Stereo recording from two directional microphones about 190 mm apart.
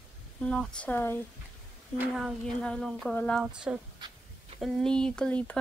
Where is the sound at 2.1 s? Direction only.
Centre (ahead or behind).